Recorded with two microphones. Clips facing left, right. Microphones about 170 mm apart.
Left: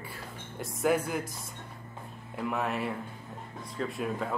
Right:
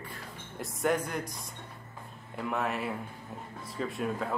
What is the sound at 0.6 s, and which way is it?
Speech, centre (ahead or behind).